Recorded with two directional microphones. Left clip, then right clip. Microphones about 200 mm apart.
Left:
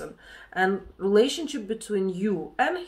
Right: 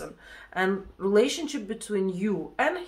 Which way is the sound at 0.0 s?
10° right (ahead or behind).